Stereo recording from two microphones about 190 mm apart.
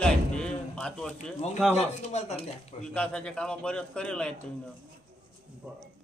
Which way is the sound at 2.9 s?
5° left (ahead or behind).